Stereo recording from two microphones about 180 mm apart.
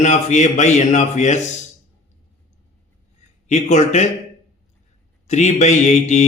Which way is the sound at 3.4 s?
40° left (ahead or behind).